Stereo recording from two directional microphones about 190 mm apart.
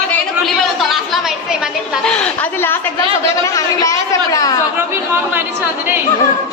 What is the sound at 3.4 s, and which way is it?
A woman's voice, 15° left (ahead or behind).